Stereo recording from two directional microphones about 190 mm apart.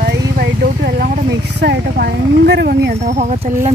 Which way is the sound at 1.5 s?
55° right (ahead or behind).